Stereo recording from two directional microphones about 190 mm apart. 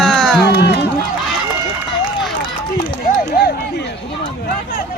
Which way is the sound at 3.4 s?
60° left (ahead or behind).